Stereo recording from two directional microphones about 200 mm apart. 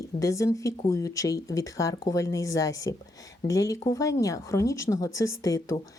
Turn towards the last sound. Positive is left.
turn(degrees=15)  # may be behind; listen again after turning